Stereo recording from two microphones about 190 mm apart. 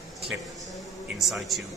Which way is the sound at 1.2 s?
Centre (ahead or behind).